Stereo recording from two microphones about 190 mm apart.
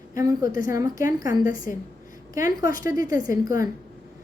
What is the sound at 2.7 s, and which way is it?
Speech, 45° left (ahead or behind).